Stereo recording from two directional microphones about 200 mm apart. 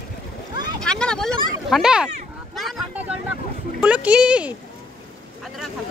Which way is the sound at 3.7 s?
5° right (ahead or behind).